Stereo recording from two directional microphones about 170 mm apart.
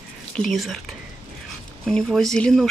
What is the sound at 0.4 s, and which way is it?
Speech, centre (ahead or behind).